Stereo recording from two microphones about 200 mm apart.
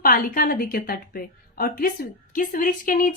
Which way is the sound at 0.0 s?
45° left (ahead or behind).